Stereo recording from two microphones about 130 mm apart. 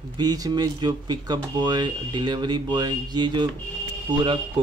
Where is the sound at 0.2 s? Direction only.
30° right (ahead or behind).